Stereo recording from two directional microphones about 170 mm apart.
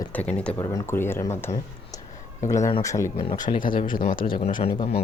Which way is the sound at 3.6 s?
55° left (ahead or behind).